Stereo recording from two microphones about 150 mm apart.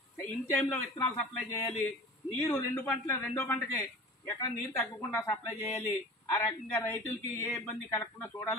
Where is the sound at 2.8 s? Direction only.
15° left (ahead or behind).